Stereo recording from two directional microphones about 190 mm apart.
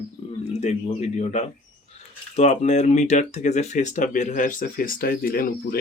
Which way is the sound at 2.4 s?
40° left (ahead or behind).